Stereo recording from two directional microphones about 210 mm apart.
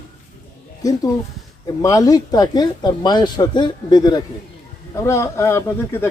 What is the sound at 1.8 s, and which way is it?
Speech, 15° left (ahead or behind).